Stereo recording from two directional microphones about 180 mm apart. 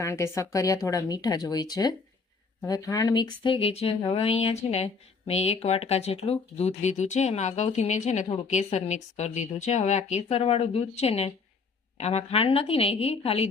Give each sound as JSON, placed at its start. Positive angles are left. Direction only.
{"t": 0.0, "sound": "speech", "side_deg": 15}